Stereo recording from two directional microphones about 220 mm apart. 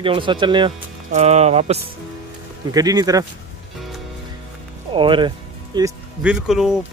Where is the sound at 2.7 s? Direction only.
15° right (ahead or behind).